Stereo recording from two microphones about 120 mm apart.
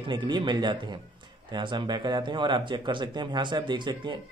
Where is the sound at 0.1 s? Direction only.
40° right (ahead or behind).